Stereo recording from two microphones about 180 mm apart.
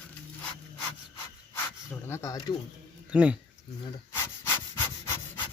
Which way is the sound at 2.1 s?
15° left (ahead or behind).